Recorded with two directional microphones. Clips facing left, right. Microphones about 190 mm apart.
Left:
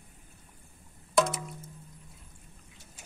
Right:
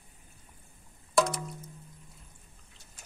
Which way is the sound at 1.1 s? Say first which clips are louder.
Even; centre (ahead or behind).